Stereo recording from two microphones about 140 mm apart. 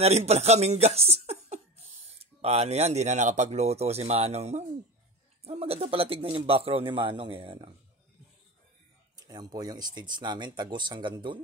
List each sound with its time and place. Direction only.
0.0 s speech: 50° right (ahead or behind)
9.3 s speech: 30° right (ahead or behind)